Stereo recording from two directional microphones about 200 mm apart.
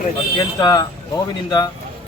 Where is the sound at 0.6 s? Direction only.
20° left (ahead or behind).